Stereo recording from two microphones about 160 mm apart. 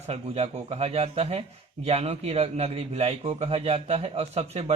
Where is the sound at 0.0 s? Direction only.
40° right (ahead or behind).